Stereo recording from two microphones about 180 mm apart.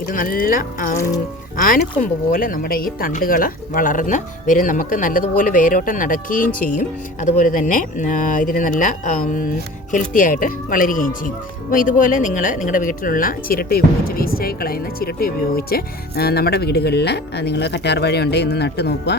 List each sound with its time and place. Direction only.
0.0 s speech: 50° left (ahead or behind)
2.0 s speech: 50° left (ahead or behind); by 19.1 s 65° left (ahead or behind)